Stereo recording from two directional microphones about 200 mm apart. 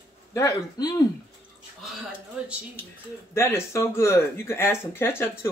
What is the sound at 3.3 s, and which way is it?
Speech, 15° left (ahead or behind).